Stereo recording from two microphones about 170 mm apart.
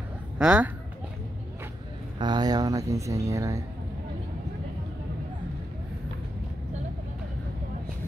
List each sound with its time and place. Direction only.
0.4 s speech: 5° right (ahead or behind)
2.1 s speech: 25° right (ahead or behind)